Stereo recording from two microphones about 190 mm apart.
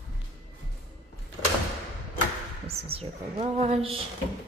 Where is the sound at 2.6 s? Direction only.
30° right (ahead or behind).